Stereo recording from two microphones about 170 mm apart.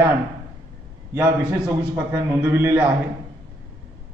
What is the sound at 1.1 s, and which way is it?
A man's voice, 15° right (ahead or behind).